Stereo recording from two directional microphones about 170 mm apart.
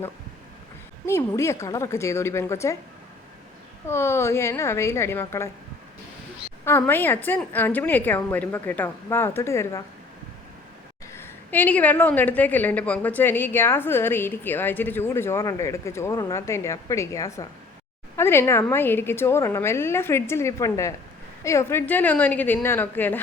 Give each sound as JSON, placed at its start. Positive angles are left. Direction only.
{"t": 1.0, "sound": "a woman's voice", "side_deg": 15}
{"t": 3.8, "sound": "a woman's voice", "side_deg": 15}
{"t": 6.7, "sound": "a woman's voice", "side_deg": 15}
{"t": 11.1, "sound": "a woman's voice", "side_deg": 10}